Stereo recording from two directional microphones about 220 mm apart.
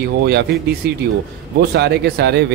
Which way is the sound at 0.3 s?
50° right (ahead or behind).